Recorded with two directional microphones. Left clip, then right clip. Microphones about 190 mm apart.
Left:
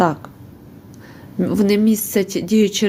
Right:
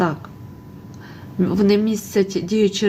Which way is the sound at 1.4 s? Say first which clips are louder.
Left 1 dB; 15° left (ahead or behind).